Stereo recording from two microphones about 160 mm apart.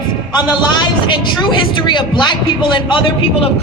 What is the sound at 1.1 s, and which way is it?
A man's voice, 30° left (ahead or behind).